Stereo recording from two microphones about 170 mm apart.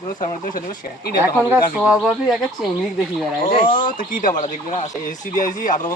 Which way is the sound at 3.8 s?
55° left (ahead or behind).